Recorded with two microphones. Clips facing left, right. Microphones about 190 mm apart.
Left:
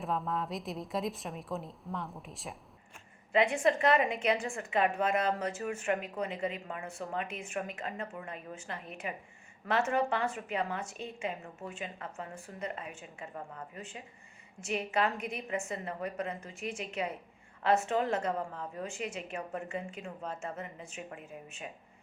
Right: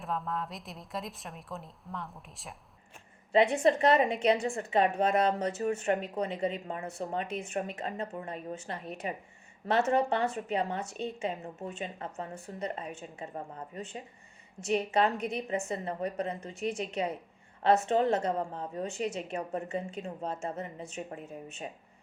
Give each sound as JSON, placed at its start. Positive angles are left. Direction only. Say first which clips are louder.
{"t": 0.0, "sound": "a woman's voice", "louder": "left 1 dB", "side_deg": 0}
{"t": 3.3, "sound": "speech", "louder": "right 3 dB", "side_deg": -40}